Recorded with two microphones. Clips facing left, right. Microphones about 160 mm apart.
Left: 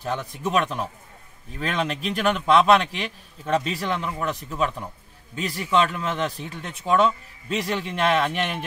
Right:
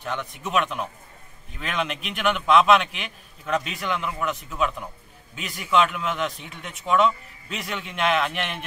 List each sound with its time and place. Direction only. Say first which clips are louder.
0.0 s a man's voice: left 3 dB; 35° left (ahead or behind)